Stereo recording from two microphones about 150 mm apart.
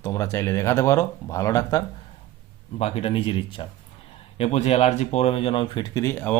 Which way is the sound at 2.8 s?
45° left (ahead or behind).